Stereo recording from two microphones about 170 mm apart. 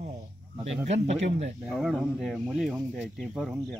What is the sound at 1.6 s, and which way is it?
Speech, centre (ahead or behind).